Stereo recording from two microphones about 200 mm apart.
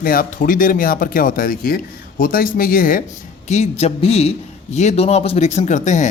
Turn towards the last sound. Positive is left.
turn(degrees=35)  # may be behind; listen again after turning